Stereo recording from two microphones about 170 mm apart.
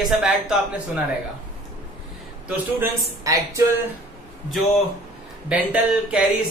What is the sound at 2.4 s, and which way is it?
A man's voice, 15° right (ahead or behind).